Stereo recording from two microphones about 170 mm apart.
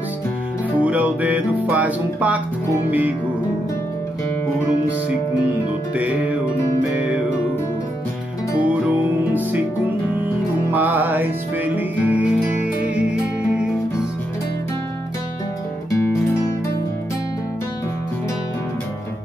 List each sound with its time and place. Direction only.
0.7 s music: 10° right (ahead or behind)
5.9 s music: 10° right (ahead or behind)
10.7 s music: 10° right (ahead or behind)
15.9 s music: 15° left (ahead or behind)